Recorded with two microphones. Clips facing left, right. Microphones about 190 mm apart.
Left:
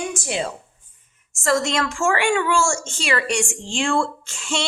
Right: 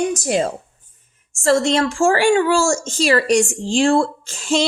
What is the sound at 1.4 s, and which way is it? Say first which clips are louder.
Speech: right 5 dB; 30° right (ahead or behind).